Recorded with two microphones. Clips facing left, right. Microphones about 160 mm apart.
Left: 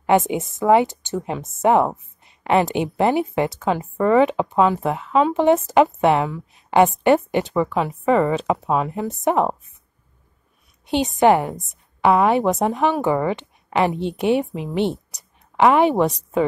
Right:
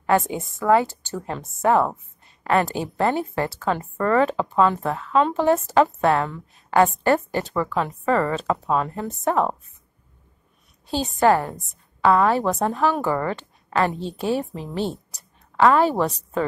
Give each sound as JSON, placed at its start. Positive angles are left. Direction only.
{"t": 0.3, "sound": "speech", "side_deg": 20}
{"t": 10.9, "sound": "a woman's voice", "side_deg": 20}